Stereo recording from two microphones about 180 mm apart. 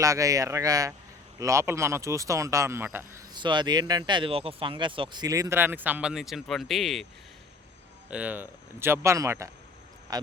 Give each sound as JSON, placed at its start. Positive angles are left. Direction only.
{"t": 0.0, "sound": "speech", "side_deg": -20}
{"t": 3.3, "sound": "speech", "side_deg": -25}
{"t": 8.1, "sound": "speech", "side_deg": -10}